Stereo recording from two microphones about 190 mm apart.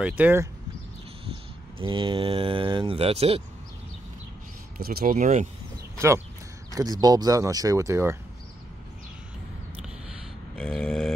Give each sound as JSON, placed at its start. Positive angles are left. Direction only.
{"t": 0.0, "sound": "speech", "side_deg": -10}
{"t": 1.3, "sound": "speech", "side_deg": -25}
{"t": 4.7, "sound": "speech", "side_deg": -50}
{"t": 5.9, "sound": "speech", "side_deg": -15}
{"t": 9.8, "sound": "a sound", "side_deg": 0}